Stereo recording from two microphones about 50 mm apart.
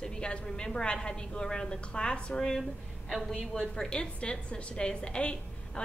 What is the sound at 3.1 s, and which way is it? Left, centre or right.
A woman's voice, centre.